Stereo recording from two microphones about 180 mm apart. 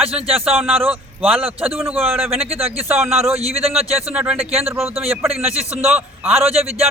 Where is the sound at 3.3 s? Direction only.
35° right (ahead or behind).